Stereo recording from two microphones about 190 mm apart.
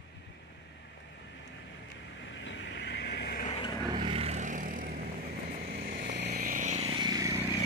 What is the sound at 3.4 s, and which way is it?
Vehicle, 30° left (ahead or behind).